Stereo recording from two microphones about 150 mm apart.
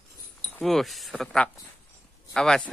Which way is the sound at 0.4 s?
5° left (ahead or behind).